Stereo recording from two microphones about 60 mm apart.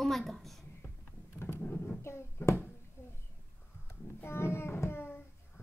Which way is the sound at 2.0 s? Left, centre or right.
Left.